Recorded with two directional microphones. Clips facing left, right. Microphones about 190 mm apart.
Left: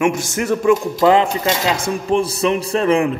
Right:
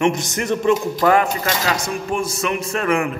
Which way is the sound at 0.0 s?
5° left (ahead or behind).